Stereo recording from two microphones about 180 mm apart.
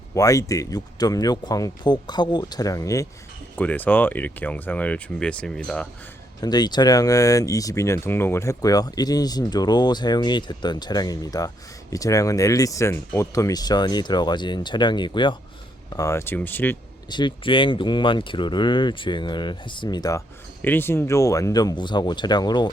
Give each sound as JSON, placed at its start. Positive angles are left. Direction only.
{"t": 0.1, "sound": "speech", "side_deg": 20}
{"t": 6.4, "sound": "speech", "side_deg": 25}
{"t": 17.1, "sound": "speech", "side_deg": 25}